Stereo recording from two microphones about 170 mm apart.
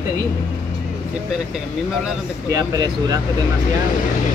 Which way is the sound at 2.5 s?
20° right (ahead or behind).